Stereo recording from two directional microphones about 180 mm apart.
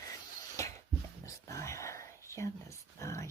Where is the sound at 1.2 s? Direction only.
15° left (ahead or behind).